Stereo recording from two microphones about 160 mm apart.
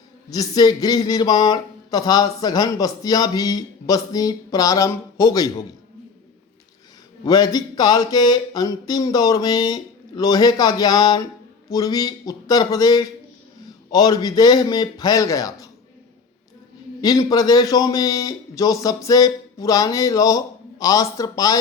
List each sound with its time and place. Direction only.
0.3 s speech: 25° left (ahead or behind)
7.3 s speech: 25° left (ahead or behind)
17.0 s speech: 25° left (ahead or behind)